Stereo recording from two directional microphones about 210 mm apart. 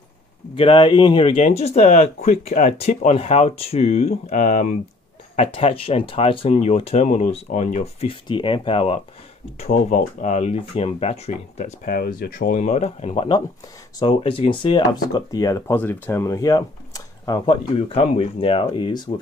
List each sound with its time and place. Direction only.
0.6 s speech: 25° left (ahead or behind)